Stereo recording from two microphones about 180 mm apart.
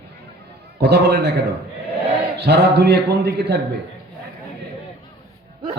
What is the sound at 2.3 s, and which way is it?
A man's voice, 65° right (ahead or behind).